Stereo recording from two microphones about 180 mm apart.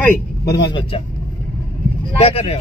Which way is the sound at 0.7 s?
30° left (ahead or behind).